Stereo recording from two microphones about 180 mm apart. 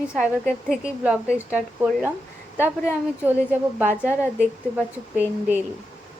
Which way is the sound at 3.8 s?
10° right (ahead or behind).